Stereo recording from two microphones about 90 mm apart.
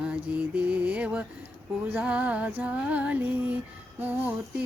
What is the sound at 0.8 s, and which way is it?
Mantra, 15° right (ahead or behind).